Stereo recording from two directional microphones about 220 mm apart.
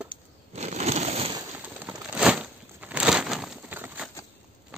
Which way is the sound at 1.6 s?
5° right (ahead or behind).